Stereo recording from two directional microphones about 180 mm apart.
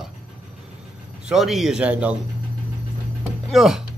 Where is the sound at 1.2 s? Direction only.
Centre (ahead or behind).